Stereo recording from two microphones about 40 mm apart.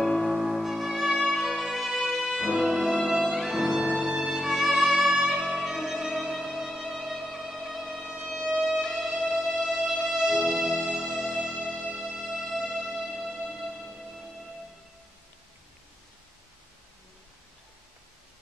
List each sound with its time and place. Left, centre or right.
0.0 s music: centre
6.3 s music: centre
13.0 s music: centre